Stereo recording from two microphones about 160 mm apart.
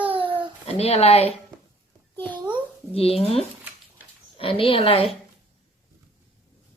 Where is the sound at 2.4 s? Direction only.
30° right (ahead or behind).